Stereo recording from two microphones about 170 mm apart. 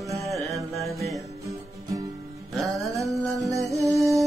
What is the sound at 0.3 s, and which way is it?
Music, centre (ahead or behind).